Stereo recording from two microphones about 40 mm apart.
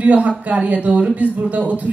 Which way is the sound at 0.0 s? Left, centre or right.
Right.